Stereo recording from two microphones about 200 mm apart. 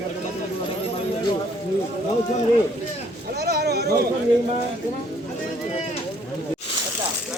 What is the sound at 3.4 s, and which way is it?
Speech, 50° right (ahead or behind).